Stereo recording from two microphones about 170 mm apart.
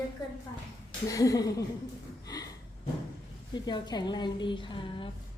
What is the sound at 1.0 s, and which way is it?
Speech, 20° left (ahead or behind).